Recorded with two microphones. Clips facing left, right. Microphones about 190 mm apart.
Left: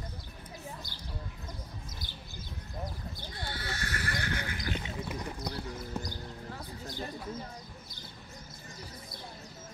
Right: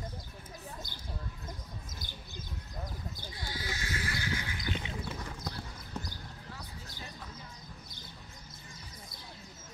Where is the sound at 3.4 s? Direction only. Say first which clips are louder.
Left 2 dB; 65° left (ahead or behind).